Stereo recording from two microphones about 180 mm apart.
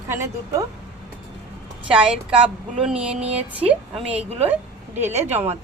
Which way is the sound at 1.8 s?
5° right (ahead or behind).